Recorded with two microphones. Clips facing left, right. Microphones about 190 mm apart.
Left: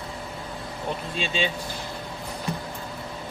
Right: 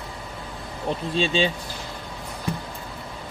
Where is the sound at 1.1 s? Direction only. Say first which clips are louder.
Right 7 dB; 35° right (ahead or behind).